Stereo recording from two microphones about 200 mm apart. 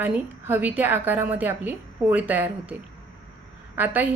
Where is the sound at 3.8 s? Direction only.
10° right (ahead or behind).